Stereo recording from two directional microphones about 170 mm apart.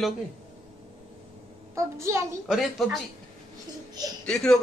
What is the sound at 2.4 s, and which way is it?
Speech, centre (ahead or behind).